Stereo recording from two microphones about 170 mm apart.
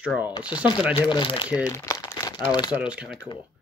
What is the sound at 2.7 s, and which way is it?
Speech, 5° right (ahead or behind).